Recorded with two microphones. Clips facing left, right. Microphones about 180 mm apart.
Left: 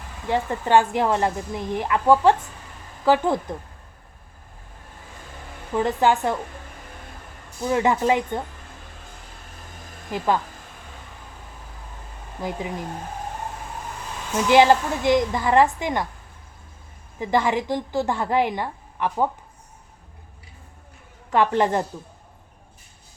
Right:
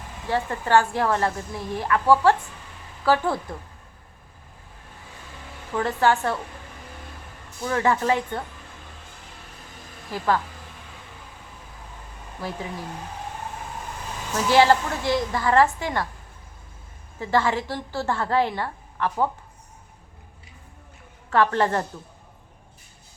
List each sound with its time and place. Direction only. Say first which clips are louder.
0.3 s a woman's voice: left 2 dB; 15° left (ahead or behind)
5.7 s a woman's voice: left 2 dB; 15° left (ahead or behind)
7.6 s a woman's voice: left 2 dB; 15° left (ahead or behind)
10.1 s a woman's voice: left 1 dB; 15° left (ahead or behind)
12.4 s a woman's voice: left 3 dB; 15° left (ahead or behind)
14.4 s a woman's voice: left 2 dB; 15° left (ahead or behind)
17.2 s a woman's voice: left 1 dB; 15° left (ahead or behind)
21.2 s a woman's voice: left 1 dB; 15° left (ahead or behind)